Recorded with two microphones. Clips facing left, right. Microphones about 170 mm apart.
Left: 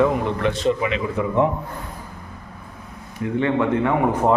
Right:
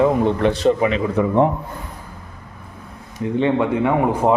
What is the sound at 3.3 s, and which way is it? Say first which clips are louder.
A man's voice: right 2 dB; 20° right (ahead or behind).